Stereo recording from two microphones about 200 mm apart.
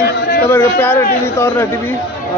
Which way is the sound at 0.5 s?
10° left (ahead or behind).